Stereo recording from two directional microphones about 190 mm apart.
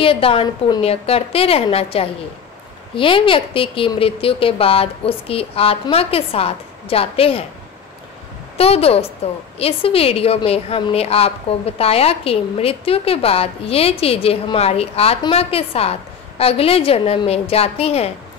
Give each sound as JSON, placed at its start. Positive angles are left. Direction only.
{"t": 0.0, "sound": "speech", "side_deg": 30}
{"t": 8.5, "sound": "a woman's voice", "side_deg": 30}